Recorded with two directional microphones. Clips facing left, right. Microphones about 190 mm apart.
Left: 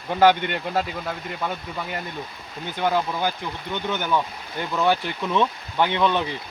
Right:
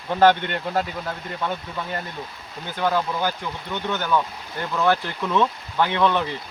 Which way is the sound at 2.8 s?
15° left (ahead or behind).